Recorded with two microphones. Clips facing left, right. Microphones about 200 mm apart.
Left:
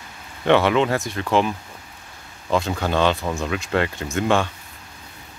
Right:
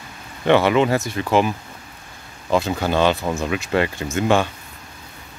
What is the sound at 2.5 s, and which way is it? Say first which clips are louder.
Speech: right 2 dB; 5° right (ahead or behind).